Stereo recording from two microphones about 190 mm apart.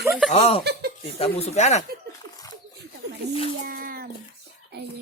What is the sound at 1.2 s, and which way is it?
Speech, 35° left (ahead or behind).